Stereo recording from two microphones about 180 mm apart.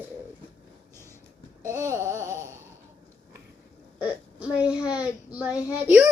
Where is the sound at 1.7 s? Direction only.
15° right (ahead or behind).